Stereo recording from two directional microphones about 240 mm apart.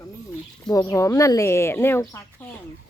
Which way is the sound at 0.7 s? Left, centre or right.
Centre.